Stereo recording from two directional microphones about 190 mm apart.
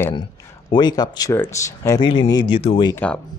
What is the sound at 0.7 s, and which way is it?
Speech, 20° left (ahead or behind).